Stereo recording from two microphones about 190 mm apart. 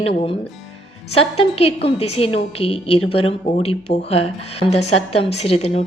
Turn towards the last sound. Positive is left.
turn(degrees=35)  # may be behind; listen again after turning